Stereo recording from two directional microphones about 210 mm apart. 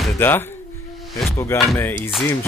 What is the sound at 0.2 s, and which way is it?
Music, 10° left (ahead or behind).